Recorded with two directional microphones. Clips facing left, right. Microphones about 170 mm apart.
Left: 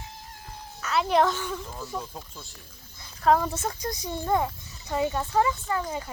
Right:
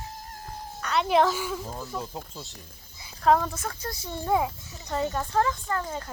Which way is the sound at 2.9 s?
5° right (ahead or behind).